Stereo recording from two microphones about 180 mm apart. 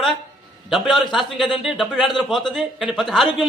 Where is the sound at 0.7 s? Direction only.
Centre (ahead or behind).